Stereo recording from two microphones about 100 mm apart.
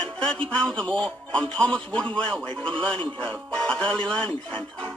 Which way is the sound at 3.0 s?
55° right (ahead or behind).